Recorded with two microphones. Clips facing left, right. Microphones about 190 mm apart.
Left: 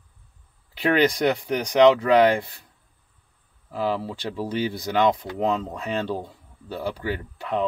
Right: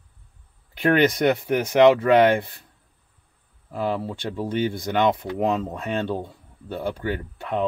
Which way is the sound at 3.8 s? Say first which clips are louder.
Even; centre (ahead or behind).